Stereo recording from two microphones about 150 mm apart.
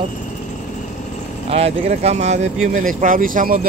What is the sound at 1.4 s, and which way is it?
Speech, 45° right (ahead or behind).